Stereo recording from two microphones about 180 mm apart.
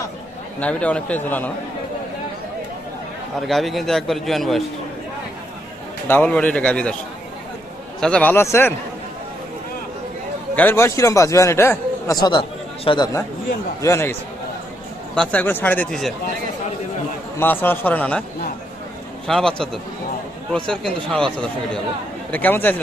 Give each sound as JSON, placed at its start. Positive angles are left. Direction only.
{"t": 0.6, "sound": "speech", "side_deg": 5}
{"t": 3.4, "sound": "speech", "side_deg": 0}
{"t": 6.1, "sound": "speech", "side_deg": 10}
{"t": 8.0, "sound": "speech", "side_deg": 5}
{"t": 10.5, "sound": "a man's voice", "side_deg": 10}
{"t": 13.8, "sound": "speech", "side_deg": 15}
{"t": 17.3, "sound": "speech", "side_deg": 10}
{"t": 19.3, "sound": "speech", "side_deg": 0}